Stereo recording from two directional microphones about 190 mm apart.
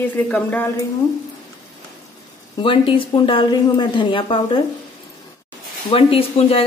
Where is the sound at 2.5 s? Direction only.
25° left (ahead or behind).